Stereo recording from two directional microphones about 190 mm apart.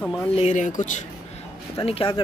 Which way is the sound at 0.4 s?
40° left (ahead or behind).